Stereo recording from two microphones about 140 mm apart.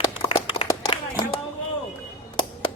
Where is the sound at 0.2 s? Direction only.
40° left (ahead or behind).